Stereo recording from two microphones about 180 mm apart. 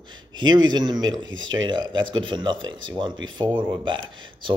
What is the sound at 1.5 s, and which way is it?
Speech, 25° right (ahead or behind).